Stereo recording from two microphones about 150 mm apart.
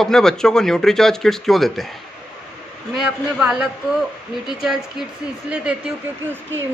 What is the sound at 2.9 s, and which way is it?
Speech, 5° right (ahead or behind).